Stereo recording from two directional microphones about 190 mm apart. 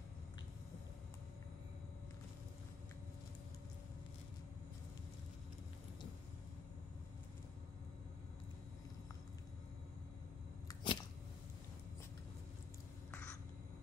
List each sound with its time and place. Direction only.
10.7 s cat: 25° left (ahead or behind)